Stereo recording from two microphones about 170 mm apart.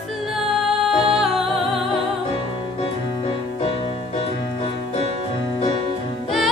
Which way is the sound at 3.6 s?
35° left (ahead or behind).